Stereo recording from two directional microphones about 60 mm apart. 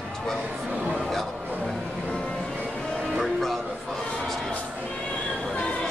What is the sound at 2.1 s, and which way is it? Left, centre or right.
Music, centre.